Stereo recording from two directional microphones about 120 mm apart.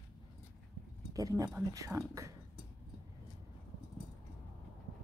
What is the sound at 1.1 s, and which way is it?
A woman's voice, 30° right (ahead or behind).